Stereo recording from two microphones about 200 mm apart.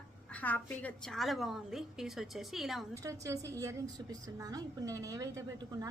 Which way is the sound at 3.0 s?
15° right (ahead or behind).